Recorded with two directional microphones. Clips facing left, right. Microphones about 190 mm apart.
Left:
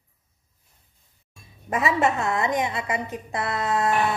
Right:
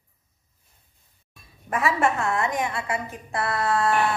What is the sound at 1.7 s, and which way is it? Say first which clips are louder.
Speech: left 1 dB; 20° left (ahead or behind).